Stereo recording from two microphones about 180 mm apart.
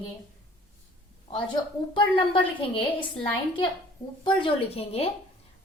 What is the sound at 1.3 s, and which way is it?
A woman's voice, 30° left (ahead or behind).